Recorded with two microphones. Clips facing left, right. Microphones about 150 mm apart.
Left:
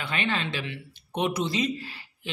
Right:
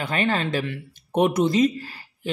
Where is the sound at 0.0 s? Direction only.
40° right (ahead or behind).